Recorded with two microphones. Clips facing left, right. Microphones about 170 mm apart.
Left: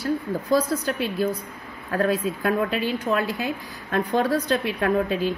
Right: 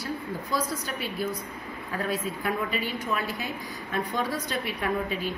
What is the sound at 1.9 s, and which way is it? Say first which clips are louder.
A woman's voice: left 8 dB; 75° left (ahead or behind).